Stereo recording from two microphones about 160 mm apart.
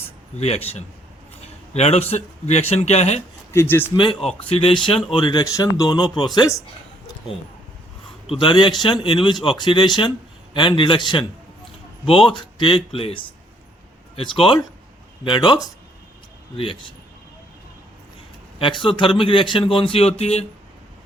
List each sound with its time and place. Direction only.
0.3 s speech: 40° left (ahead or behind)
3.5 s a man's voice: 15° left (ahead or behind)
3.9 s speech: 30° left (ahead or behind)
8.3 s speech: 30° left (ahead or behind)
12.4 s speech: 35° left (ahead or behind)
18.6 s speech: 30° left (ahead or behind)